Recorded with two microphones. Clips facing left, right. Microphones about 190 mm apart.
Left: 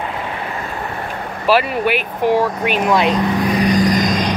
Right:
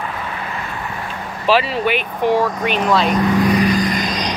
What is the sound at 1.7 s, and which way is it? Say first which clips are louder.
Speech: left 1 dB; 10° left (ahead or behind).